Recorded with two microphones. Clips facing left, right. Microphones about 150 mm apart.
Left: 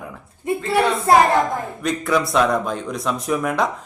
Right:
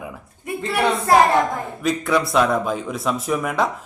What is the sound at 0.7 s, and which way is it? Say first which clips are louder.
Speech: left 1 dB; 25° left (ahead or behind).